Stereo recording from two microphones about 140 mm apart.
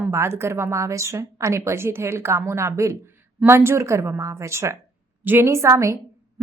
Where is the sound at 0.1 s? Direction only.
20° right (ahead or behind).